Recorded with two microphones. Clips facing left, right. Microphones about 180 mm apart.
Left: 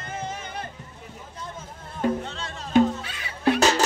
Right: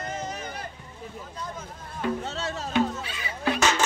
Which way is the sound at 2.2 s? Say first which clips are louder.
Right 4 dB; 40° right (ahead or behind).